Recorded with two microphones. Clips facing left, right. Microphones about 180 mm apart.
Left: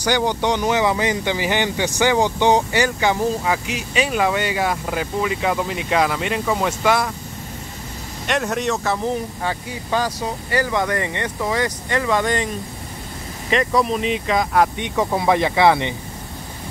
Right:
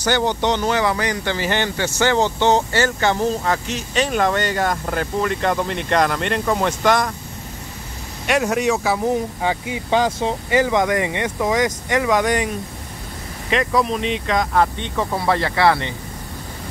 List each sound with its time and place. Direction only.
0.0 s speech: 10° left (ahead or behind)
8.3 s speech: 5° right (ahead or behind)
13.5 s speech: centre (ahead or behind); by 15.9 s 20° left (ahead or behind)